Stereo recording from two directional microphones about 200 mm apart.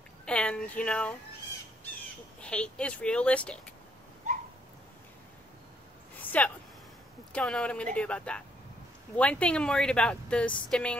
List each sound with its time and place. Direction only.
0.2 s speech: 5° left (ahead or behind)
2.4 s speech: 5° left (ahead or behind)
6.1 s a sound: 10° left (ahead or behind)
7.3 s speech: 5° left (ahead or behind)